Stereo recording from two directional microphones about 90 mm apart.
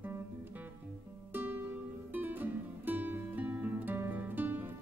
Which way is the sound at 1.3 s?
15° right (ahead or behind).